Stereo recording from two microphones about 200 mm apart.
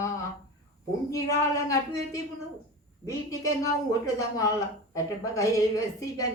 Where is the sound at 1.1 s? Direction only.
15° left (ahead or behind).